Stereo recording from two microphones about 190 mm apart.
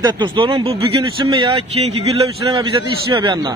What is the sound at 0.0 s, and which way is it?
A man's voice, 25° right (ahead or behind).